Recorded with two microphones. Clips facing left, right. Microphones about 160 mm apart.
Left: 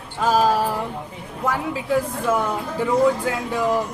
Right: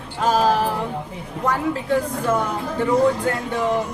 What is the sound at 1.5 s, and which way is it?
Speech, 5° left (ahead or behind).